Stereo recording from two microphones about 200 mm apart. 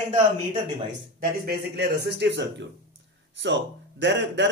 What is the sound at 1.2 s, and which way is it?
Speech, 50° right (ahead or behind).